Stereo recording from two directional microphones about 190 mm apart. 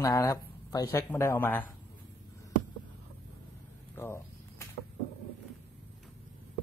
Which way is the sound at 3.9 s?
10° left (ahead or behind).